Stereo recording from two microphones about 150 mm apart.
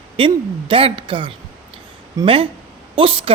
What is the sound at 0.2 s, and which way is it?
A woman's voice, 35° right (ahead or behind).